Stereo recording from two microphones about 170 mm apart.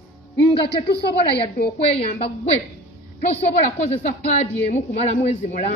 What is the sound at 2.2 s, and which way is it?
Speech, 40° left (ahead or behind).